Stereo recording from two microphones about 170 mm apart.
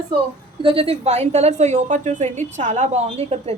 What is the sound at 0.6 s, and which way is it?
A woman's voice, 35° right (ahead or behind).